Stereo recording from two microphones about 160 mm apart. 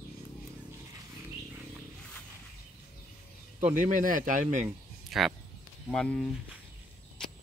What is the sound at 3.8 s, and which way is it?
Speech, 55° right (ahead or behind).